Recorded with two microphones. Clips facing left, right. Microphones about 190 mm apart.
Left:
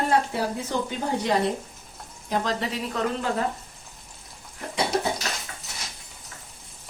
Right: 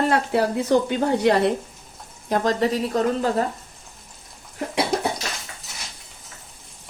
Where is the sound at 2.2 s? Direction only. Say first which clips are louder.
Right 6 dB; 45° right (ahead or behind).